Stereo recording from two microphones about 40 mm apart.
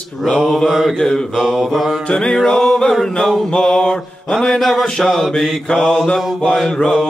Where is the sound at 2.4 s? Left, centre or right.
Centre.